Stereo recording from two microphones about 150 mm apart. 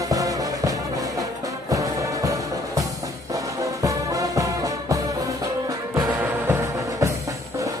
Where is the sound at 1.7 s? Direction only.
20° right (ahead or behind).